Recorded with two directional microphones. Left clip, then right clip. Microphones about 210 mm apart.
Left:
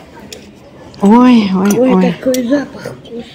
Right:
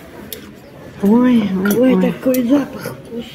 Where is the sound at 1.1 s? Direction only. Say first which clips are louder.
Left 6 dB; 25° left (ahead or behind).